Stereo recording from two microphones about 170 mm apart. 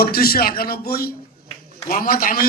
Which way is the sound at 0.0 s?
60° left (ahead or behind).